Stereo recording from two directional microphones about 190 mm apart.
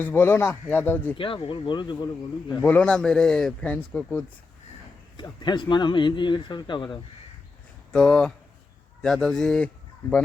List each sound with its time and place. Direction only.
0.0 s speech: 10° left (ahead or behind)
1.1 s speech: 25° left (ahead or behind)
2.6 s a man's voice: 5° left (ahead or behind)
5.1 s speech: 25° left (ahead or behind)
7.9 s a man's voice: 5° left (ahead or behind)